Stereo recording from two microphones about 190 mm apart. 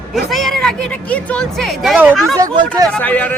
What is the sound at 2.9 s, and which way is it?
Speech, 10° left (ahead or behind).